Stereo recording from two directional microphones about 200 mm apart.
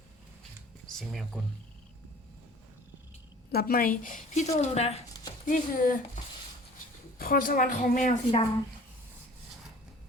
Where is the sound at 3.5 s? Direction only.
50° left (ahead or behind).